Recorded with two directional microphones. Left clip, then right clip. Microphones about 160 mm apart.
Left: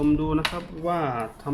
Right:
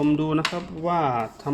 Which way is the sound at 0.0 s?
40° right (ahead or behind).